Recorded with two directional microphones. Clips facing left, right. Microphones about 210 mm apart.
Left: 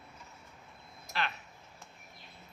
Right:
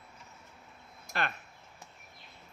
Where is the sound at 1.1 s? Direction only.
50° right (ahead or behind).